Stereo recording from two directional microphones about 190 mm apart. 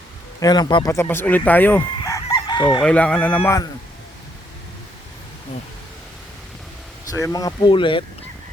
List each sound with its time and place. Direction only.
0.3 s speech: 20° left (ahead or behind)
1.8 s chicken: 20° left (ahead or behind)
2.8 s speech: 5° left (ahead or behind)
7.1 s speech: 20° left (ahead or behind)